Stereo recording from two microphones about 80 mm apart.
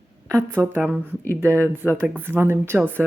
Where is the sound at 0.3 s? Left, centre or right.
Right.